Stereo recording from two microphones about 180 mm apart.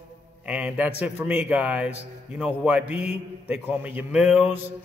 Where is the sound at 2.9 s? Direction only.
35° left (ahead or behind).